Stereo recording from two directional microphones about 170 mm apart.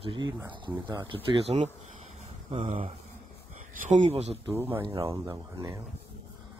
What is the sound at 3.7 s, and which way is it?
Speech, 45° right (ahead or behind).